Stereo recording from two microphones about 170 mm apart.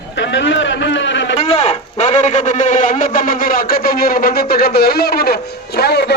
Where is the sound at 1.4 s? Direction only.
35° left (ahead or behind).